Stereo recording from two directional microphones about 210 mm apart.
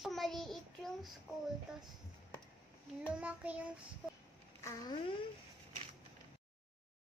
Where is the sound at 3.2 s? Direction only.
5° right (ahead or behind).